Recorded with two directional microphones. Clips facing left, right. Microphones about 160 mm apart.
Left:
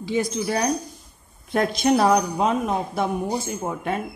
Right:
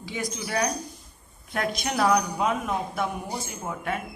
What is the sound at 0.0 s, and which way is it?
Speech, 25° left (ahead or behind).